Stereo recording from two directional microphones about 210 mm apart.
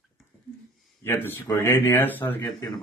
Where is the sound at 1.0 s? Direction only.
10° left (ahead or behind).